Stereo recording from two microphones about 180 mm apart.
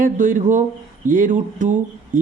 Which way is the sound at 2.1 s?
45° right (ahead or behind).